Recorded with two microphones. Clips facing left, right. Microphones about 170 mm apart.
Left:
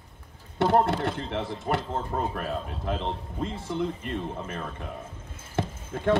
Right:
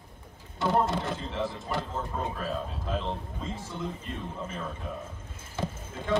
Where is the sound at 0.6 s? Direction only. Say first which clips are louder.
Left 4 dB; 60° left (ahead or behind).